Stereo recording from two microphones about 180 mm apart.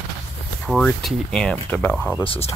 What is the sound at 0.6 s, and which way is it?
Speech, 5° left (ahead or behind).